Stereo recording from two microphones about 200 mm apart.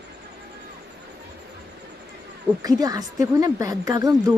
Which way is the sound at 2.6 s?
20° right (ahead or behind).